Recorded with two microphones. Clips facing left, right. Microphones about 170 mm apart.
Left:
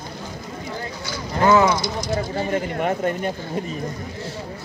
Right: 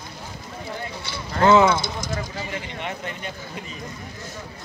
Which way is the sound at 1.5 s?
25° right (ahead or behind).